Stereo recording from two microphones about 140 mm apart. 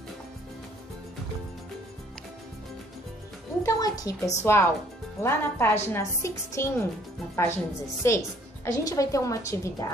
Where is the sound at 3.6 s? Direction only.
25° left (ahead or behind).